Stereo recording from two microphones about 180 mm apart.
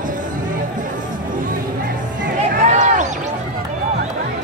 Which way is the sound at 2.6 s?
45° right (ahead or behind).